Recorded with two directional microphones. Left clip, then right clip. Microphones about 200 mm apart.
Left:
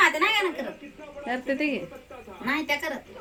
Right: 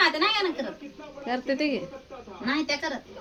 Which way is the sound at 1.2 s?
10° right (ahead or behind).